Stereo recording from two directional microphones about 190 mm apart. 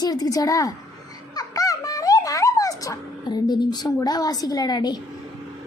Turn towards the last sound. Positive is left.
turn(degrees=20)  # may be behind; listen again after turning